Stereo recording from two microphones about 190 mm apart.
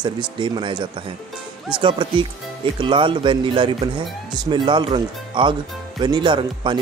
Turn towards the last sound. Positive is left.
turn(degrees=-25)  # may be behind; listen again after turning